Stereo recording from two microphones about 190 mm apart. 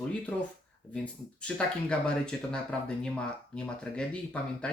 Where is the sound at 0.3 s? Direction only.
5° left (ahead or behind).